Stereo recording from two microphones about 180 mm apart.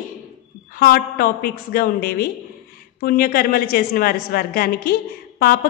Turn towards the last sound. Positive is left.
turn(degrees=55)  # may be behind; listen again after turning